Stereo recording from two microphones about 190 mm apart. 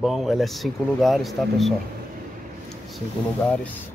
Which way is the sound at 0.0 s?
Centre (ahead or behind).